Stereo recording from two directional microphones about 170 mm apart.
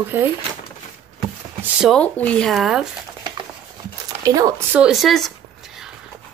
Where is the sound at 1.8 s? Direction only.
5° left (ahead or behind).